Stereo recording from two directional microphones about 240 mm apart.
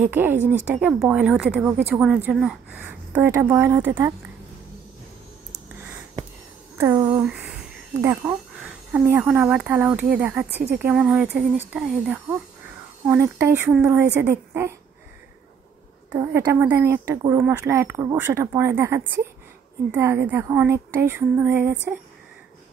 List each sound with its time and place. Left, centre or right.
0.0 s speech: centre
6.8 s speech: centre
7.2 s a sound: centre
8.0 s speech: centre
16.1 s speech: centre